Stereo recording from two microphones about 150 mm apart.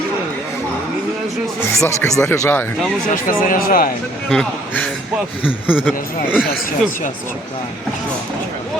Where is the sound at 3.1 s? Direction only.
70° left (ahead or behind).